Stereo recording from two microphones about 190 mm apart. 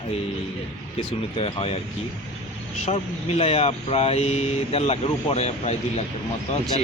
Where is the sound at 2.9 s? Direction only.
35° left (ahead or behind).